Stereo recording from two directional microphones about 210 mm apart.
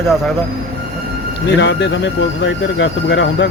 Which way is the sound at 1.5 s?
55° left (ahead or behind).